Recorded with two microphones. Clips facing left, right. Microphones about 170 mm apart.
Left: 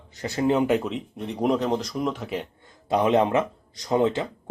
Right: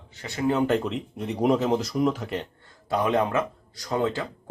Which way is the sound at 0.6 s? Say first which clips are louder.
Left 1 dB; 5° left (ahead or behind).